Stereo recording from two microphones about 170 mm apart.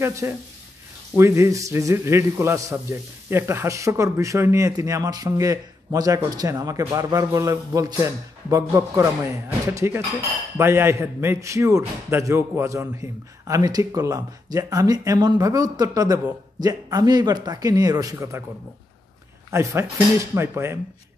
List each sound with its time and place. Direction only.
0.0 s a man's voice: 20° right (ahead or behind)
19.5 s a man's voice: 15° right (ahead or behind)